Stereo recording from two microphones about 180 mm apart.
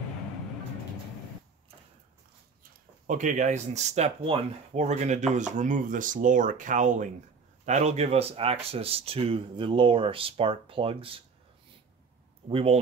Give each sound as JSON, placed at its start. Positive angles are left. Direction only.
{"t": 3.1, "sound": "speech", "side_deg": -45}
{"t": 12.4, "sound": "speech", "side_deg": -30}